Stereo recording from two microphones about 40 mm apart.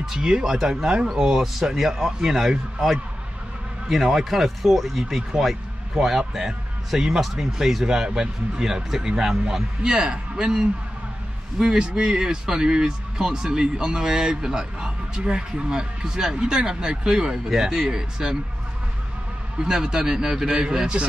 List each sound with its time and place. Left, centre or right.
0.0 s speech: centre
3.9 s speech: centre
5.0 s speech: centre
19.6 s speech: centre